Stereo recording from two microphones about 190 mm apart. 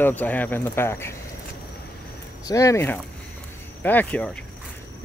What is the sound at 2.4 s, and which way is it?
Speech, 15° left (ahead or behind).